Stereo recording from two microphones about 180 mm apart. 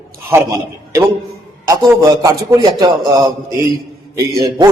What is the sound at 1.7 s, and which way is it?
A man's voice, 20° right (ahead or behind).